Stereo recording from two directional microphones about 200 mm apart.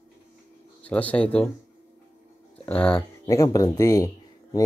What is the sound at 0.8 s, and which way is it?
Speech, 5° left (ahead or behind).